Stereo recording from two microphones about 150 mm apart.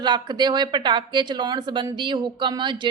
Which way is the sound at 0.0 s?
30° right (ahead or behind).